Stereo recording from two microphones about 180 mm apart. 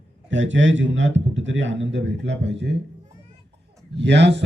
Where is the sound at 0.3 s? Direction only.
90° right.